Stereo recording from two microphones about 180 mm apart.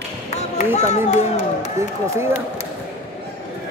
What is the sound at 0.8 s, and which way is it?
Speech, 40° left (ahead or behind).